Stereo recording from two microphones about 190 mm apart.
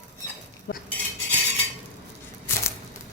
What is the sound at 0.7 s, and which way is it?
Cutlery, 75° left (ahead or behind).